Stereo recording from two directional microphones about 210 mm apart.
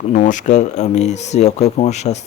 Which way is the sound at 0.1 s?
35° left (ahead or behind).